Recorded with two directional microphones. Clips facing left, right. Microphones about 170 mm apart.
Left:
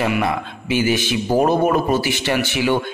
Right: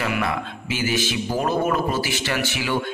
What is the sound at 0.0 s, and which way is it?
Speech, 20° left (ahead or behind).